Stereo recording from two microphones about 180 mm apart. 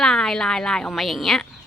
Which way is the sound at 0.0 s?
5° left (ahead or behind).